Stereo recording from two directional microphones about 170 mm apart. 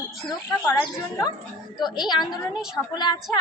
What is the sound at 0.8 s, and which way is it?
A child's voice, 20° left (ahead or behind).